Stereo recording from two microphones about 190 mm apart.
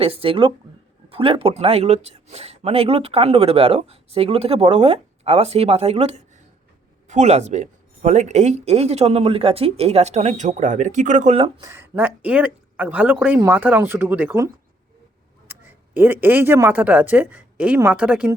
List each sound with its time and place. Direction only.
0.0 s speech: 30° right (ahead or behind)
11.3 s speech: 25° right (ahead or behind)
11.7 s a woman's voice: 10° right (ahead or behind)
15.5 s a sound: 10° right (ahead or behind)
16.0 s a woman's voice: 10° right (ahead or behind)